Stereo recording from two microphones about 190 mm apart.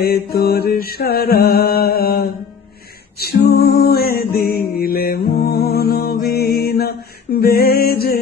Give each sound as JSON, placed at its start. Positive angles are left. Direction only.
{"t": 0.0, "sound": "mantra", "side_deg": 55}
{"t": 4.5, "sound": "music", "side_deg": 55}
{"t": 5.5, "sound": "mantra", "side_deg": 55}